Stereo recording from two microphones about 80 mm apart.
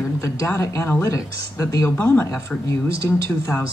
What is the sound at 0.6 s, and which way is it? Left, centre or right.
Speech, left.